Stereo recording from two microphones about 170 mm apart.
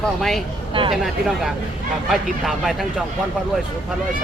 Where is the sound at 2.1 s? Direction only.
Centre (ahead or behind).